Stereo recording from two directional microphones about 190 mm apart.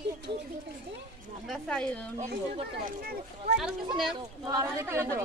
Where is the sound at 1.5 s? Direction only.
5° left (ahead or behind).